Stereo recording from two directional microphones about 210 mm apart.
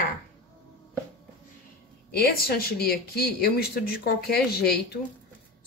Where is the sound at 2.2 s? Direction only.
45° left (ahead or behind).